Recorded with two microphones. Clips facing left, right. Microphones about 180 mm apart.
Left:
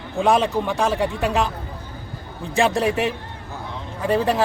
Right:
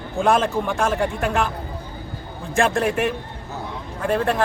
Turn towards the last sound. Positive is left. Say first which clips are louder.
# left 1 dB
turn(degrees=0)  # may be behind; listen again after turning